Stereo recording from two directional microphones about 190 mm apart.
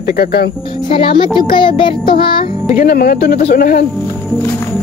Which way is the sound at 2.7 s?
50° left (ahead or behind).